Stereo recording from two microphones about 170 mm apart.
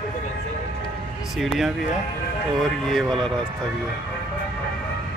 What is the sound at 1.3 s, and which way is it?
Speech, centre (ahead or behind).